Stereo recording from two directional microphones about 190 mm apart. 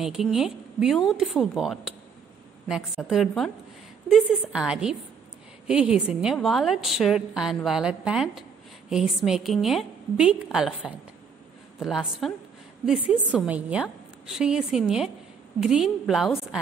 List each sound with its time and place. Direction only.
0.0 s a woman's voice: centre (ahead or behind)